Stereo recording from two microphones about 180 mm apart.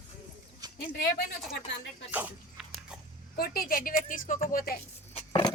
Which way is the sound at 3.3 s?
55° left (ahead or behind).